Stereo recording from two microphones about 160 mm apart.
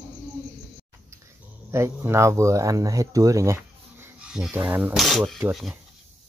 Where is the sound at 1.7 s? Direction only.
15° right (ahead or behind).